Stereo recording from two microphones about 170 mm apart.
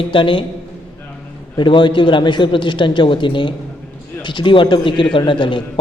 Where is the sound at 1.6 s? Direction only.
30° left (ahead or behind).